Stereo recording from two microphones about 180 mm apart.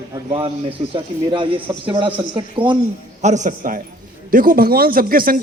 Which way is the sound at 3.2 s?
40° right (ahead or behind).